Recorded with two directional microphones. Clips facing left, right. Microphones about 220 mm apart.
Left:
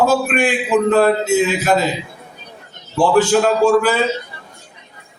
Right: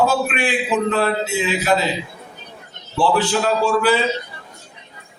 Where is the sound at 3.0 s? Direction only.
45° left (ahead or behind).